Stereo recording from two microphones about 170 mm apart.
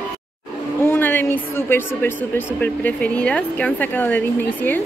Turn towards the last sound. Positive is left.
turn(degrees=10)  # may be behind; listen again after turning